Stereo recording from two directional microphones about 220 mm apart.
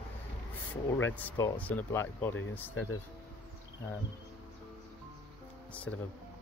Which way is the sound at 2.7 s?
75° left (ahead or behind).